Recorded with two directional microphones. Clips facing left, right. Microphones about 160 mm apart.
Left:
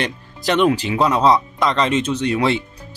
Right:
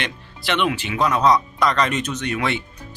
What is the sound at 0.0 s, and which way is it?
Speech, 40° left (ahead or behind).